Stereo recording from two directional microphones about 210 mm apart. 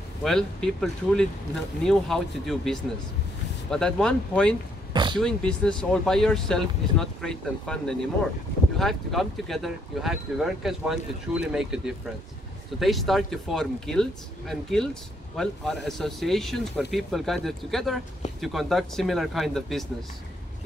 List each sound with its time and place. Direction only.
0.2 s speech: centre (ahead or behind)
4.9 s a sound: 20° right (ahead or behind)
5.2 s speech: 5° left (ahead or behind)